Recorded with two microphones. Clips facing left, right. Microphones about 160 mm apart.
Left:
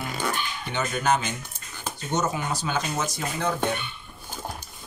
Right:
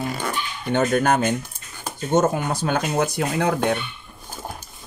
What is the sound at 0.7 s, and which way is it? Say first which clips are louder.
Speech: right 6 dB; 50° right (ahead or behind).